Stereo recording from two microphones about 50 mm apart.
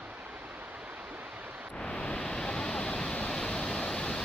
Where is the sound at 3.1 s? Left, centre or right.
Centre.